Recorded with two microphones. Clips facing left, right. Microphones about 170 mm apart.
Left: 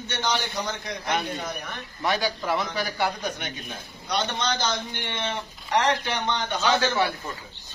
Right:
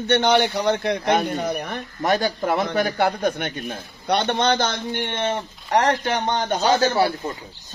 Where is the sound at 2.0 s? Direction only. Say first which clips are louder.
Right 5 dB; 45° right (ahead or behind).